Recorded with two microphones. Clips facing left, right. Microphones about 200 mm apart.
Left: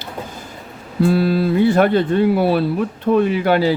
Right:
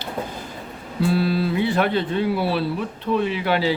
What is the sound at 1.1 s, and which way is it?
Speech, 45° left (ahead or behind).